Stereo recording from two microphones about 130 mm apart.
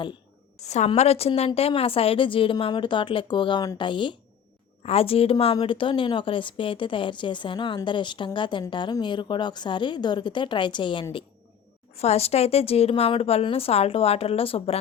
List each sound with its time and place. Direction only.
0.6 s a woman's voice: 60° left (ahead or behind); by 4.2 s 40° left (ahead or behind)
4.8 s a woman's voice: 50° left (ahead or behind)
11.9 s a woman's voice: 55° left (ahead or behind)